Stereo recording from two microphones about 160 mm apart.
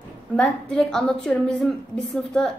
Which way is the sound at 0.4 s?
5° left (ahead or behind).